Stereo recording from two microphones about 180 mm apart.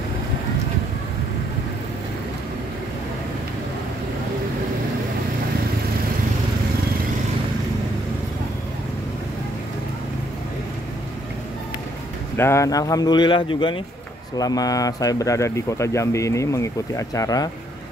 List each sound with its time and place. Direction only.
12.4 s speech: 15° left (ahead or behind)